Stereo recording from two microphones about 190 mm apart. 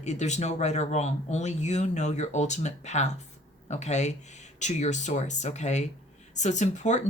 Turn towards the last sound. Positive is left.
turn(degrees=40)  # may be behind; listen again after turning